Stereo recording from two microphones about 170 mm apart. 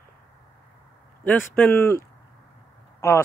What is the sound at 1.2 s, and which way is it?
Speech, 10° left (ahead or behind).